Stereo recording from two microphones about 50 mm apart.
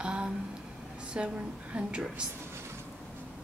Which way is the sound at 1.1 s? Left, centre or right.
Right.